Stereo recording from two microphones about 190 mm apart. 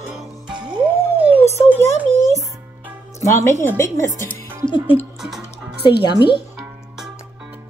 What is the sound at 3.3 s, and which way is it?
Speech, 15° left (ahead or behind).